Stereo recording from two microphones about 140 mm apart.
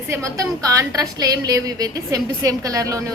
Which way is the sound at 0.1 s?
20° right (ahead or behind).